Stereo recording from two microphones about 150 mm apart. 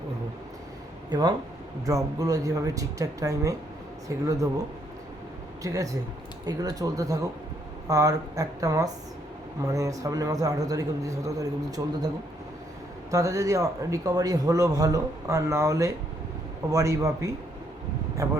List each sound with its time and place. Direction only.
1.1 s a man's voice: 25° right (ahead or behind)
5.6 s a man's voice: 20° right (ahead or behind)